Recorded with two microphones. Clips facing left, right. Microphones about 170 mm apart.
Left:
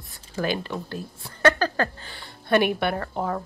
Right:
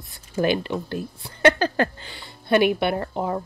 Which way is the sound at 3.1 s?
15° right (ahead or behind).